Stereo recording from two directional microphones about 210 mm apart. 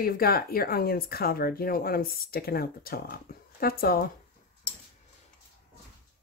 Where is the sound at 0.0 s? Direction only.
45° left (ahead or behind).